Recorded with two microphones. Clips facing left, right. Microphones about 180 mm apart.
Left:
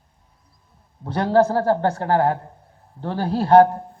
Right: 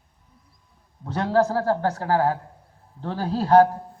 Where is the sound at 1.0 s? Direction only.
30° left (ahead or behind).